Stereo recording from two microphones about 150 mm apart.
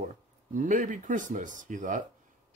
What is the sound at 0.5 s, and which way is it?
Speech, 60° right (ahead or behind).